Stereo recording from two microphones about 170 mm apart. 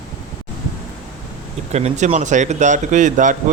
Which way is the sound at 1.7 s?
40° right (ahead or behind).